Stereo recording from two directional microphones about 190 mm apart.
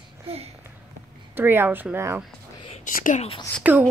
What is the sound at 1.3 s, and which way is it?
Speech, 10° right (ahead or behind).